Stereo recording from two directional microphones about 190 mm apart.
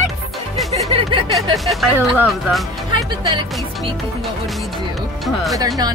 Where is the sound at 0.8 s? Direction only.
30° right (ahead or behind).